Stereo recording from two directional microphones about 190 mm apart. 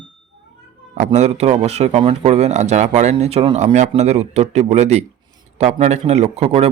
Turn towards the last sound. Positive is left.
turn(degrees=-35)  # may be behind; listen again after turning